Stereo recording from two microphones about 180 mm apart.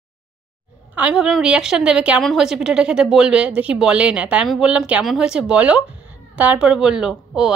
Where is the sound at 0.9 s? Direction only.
5° right (ahead or behind).